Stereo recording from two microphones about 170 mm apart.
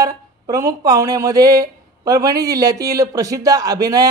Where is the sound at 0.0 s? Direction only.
20° right (ahead or behind).